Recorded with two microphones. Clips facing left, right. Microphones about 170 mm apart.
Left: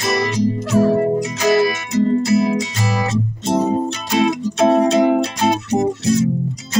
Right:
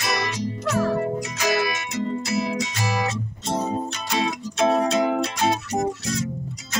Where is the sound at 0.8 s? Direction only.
35° left (ahead or behind).